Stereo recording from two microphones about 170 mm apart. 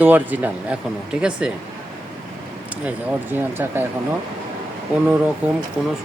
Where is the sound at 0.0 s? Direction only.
10° right (ahead or behind).